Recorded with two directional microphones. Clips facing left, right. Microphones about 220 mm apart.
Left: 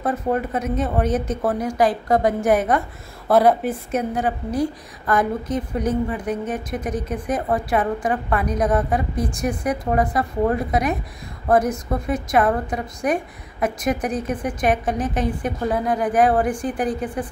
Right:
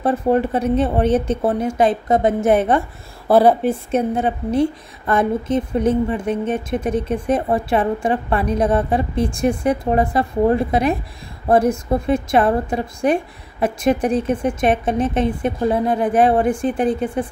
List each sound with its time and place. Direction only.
0.0 s a woman's voice: 30° right (ahead or behind)